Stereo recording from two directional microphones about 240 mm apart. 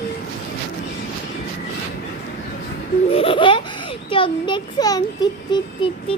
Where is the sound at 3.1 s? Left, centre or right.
Left.